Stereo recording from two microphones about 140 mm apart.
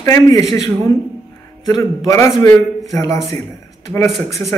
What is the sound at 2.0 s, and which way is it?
Speech, 20° left (ahead or behind).